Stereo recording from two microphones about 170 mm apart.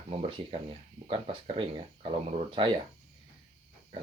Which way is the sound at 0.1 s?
35° right (ahead or behind).